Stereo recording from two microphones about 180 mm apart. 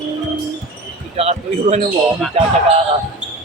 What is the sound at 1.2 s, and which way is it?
A man's voice, 35° right (ahead or behind).